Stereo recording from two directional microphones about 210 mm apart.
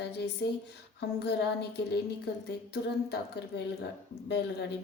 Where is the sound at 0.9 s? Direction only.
55° left (ahead or behind).